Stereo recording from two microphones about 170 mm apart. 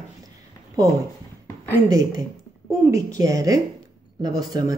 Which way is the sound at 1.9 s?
20° right (ahead or behind).